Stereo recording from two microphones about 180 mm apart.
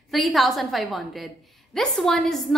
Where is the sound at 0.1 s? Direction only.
Centre (ahead or behind).